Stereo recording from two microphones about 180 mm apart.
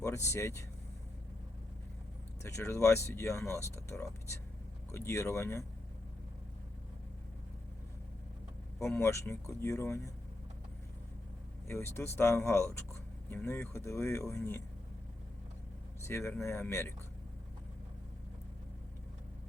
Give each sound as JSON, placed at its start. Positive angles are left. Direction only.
{"t": 0.0, "sound": "speech", "side_deg": 15}
{"t": 2.4, "sound": "speech", "side_deg": 15}
{"t": 9.0, "sound": "speech", "side_deg": 15}
{"t": 11.7, "sound": "speech", "side_deg": 15}
{"t": 16.0, "sound": "speech", "side_deg": 15}